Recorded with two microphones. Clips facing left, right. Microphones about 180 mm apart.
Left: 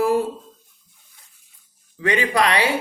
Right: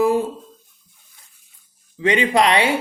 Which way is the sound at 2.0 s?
20° right (ahead or behind).